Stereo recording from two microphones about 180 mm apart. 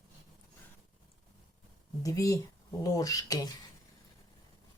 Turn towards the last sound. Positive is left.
turn(degrees=20)  # may be behind; listen again after turning